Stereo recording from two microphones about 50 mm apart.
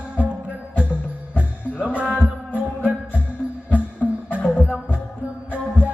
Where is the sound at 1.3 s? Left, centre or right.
Right.